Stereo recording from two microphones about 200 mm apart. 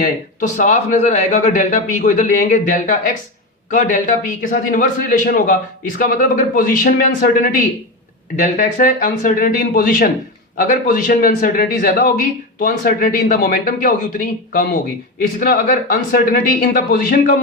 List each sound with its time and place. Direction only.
0.0 s speech: 40° left (ahead or behind)
15.2 s speech: 45° left (ahead or behind)